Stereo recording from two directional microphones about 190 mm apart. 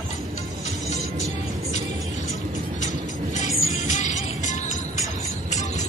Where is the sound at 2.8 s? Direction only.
40° left (ahead or behind).